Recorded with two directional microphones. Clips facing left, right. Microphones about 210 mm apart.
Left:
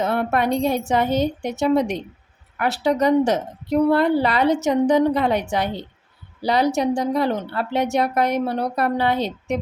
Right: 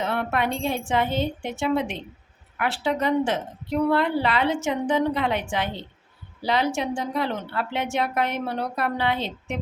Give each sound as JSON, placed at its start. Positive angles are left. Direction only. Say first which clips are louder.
{"t": 0.0, "sound": "a woman's voice", "louder": "left 5 dB", "side_deg": 40}